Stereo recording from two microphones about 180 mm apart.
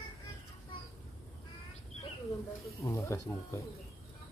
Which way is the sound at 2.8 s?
15° left (ahead or behind).